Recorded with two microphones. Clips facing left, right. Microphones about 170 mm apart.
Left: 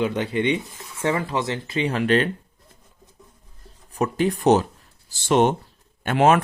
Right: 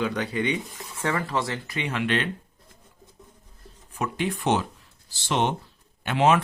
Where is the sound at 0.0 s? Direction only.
25° left (ahead or behind).